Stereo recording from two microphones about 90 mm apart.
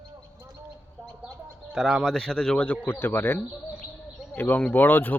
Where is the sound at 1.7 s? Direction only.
5° right (ahead or behind); by 2.8 s 10° left (ahead or behind).